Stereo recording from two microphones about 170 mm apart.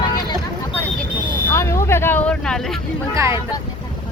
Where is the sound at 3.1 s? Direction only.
15° right (ahead or behind).